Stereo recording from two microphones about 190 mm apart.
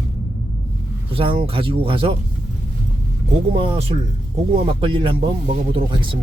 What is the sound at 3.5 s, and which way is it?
Speech, 30° right (ahead or behind).